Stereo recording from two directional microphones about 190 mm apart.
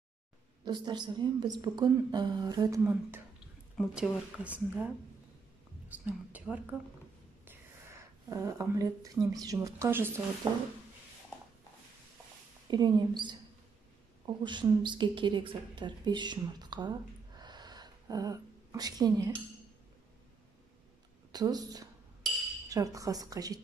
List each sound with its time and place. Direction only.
0.7 s a woman's voice: 20° right (ahead or behind); by 4.8 s 5° right (ahead or behind)
5.9 s a woman's voice: 10° right (ahead or behind)
12.6 s a woman's voice: 20° right (ahead or behind)
21.3 s a woman's voice: 20° right (ahead or behind)